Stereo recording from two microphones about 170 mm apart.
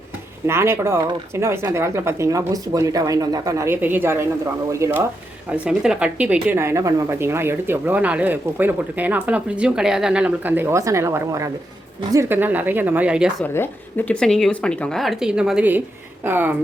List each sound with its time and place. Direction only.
0.4 s speech: 15° right (ahead or behind)
13.4 s speech: 10° left (ahead or behind); by 16.6 s 10° right (ahead or behind)